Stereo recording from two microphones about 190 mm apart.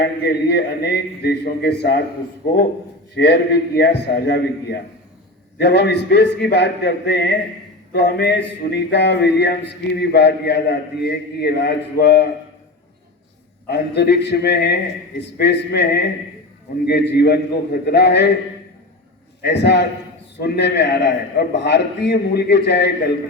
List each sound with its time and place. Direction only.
0.0 s a man's voice: 60° left (ahead or behind)
3.2 s a man's voice: 60° left (ahead or behind)
13.7 s a man's voice: 60° left (ahead or behind)
19.4 s a man's voice: 60° left (ahead or behind)